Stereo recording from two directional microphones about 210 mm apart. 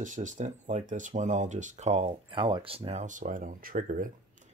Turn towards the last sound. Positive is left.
turn(degrees=-40)  # may be behind; listen again after turning